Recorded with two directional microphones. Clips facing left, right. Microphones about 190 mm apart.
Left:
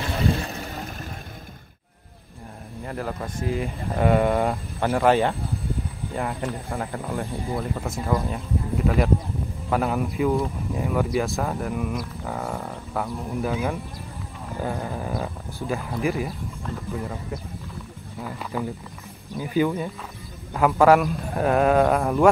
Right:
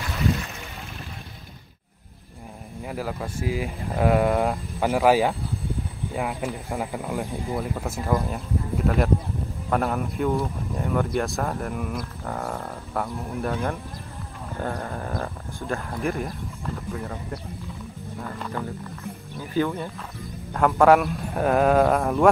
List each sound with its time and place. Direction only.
0.0 s a sound: 35° left (ahead or behind)
2.8 s speech: 5° right (ahead or behind)
18.2 s speech: 5° left (ahead or behind)
20.5 s speech: centre (ahead or behind)